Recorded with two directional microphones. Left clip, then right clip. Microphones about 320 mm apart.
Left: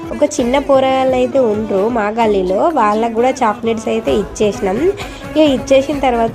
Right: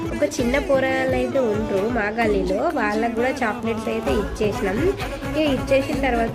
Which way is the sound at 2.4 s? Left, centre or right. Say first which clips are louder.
Left 8 dB; centre.